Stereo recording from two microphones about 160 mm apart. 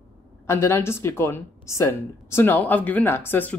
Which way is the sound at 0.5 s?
15° left (ahead or behind).